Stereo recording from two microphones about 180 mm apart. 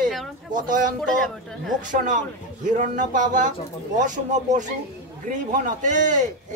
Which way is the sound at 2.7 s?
50° right (ahead or behind).